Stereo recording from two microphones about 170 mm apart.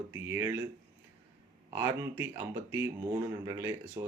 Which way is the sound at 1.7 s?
15° right (ahead or behind).